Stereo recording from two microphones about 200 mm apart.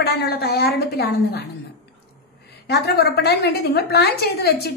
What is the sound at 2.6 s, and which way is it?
A woman's voice, 55° left (ahead or behind).